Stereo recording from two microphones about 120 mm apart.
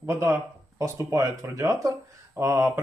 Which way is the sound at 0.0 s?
20° right (ahead or behind).